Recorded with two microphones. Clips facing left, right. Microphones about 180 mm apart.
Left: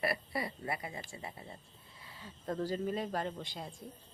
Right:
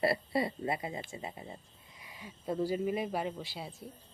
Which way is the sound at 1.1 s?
20° right (ahead or behind).